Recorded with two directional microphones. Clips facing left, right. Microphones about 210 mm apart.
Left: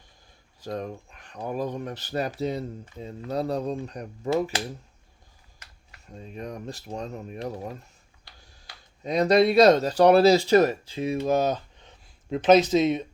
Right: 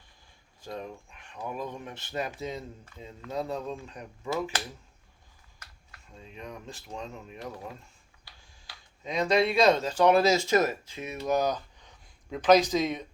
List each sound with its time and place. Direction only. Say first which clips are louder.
0.6 s speech: left 6 dB; 40° left (ahead or behind)
6.1 s speech: left 6 dB; 40° left (ahead or behind)
9.0 s speech: left 6 dB; 35° left (ahead or behind)